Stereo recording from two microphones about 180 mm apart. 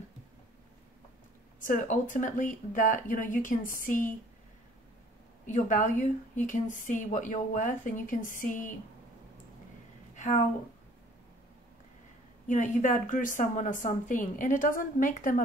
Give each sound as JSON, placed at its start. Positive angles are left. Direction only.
{"t": 1.6, "sound": "a woman's voice", "side_deg": 45}
{"t": 5.5, "sound": "a woman's voice", "side_deg": 45}
{"t": 10.1, "sound": "a sound", "side_deg": 45}
{"t": 12.4, "sound": "a woman's voice", "side_deg": 45}